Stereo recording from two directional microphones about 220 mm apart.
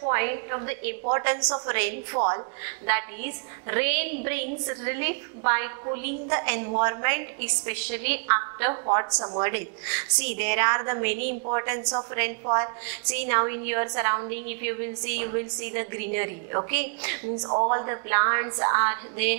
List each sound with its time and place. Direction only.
0.0 s a woman's voice: 15° right (ahead or behind)
9.5 s a woman's voice: 10° right (ahead or behind)
17.5 s a woman's voice: 25° right (ahead or behind)